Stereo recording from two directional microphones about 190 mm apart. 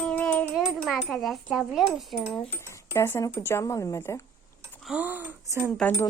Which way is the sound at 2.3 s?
15° left (ahead or behind).